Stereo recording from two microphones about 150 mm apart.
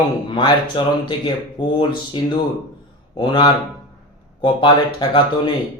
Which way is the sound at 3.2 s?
30° left (ahead or behind).